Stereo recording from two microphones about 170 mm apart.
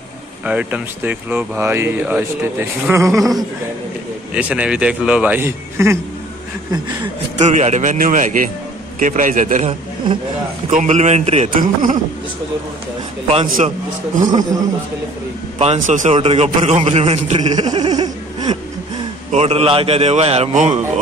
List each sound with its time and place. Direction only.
0.5 s speech: 10° right (ahead or behind)
4.3 s speech: 10° right (ahead or behind)
7.4 s speech: 40° right (ahead or behind)
10.7 s a man's voice: 45° right (ahead or behind)
11.5 s speech: 50° right (ahead or behind)
14.2 s speech: 20° right (ahead or behind)
15.6 s a man's voice: 45° right (ahead or behind)
17.6 s a sound: 25° right (ahead or behind)
19.3 s a man's voice: 35° right (ahead or behind)